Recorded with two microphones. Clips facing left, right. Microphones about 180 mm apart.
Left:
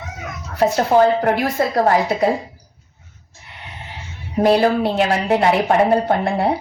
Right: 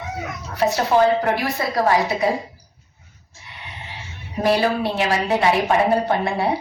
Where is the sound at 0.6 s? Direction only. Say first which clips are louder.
Left 3 dB; 35° left (ahead or behind).